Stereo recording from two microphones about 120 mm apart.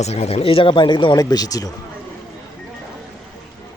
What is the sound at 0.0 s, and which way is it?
Speech, 60° left (ahead or behind).